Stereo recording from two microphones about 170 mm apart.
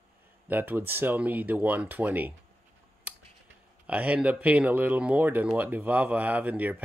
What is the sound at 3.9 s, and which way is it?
Speech, 10° right (ahead or behind).